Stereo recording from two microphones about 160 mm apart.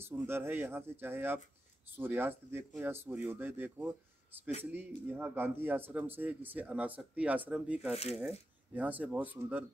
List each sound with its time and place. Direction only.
0.0 s a man's voice: 15° right (ahead or behind)
7.9 s speech: 40° left (ahead or behind)
8.7 s a man's voice: 10° right (ahead or behind)